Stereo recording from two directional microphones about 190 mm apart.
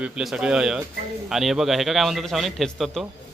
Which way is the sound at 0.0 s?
Centre (ahead or behind).